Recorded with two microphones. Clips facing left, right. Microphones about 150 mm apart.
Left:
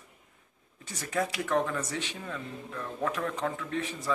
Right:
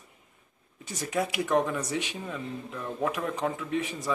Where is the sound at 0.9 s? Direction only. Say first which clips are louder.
Right 2 dB; 20° right (ahead or behind).